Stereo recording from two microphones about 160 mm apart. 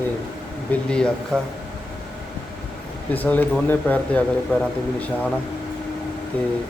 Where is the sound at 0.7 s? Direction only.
5° left (ahead or behind).